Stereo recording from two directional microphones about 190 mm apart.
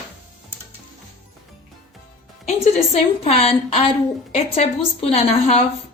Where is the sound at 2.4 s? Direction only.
35° left (ahead or behind).